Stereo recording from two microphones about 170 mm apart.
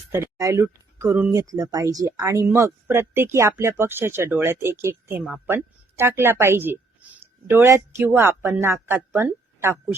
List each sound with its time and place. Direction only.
0.1 s a woman's voice: 15° right (ahead or behind)